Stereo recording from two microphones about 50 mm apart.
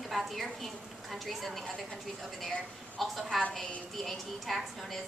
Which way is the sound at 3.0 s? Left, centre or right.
Centre.